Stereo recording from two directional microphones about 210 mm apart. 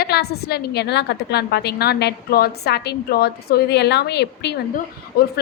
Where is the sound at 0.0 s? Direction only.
50° left (ahead or behind).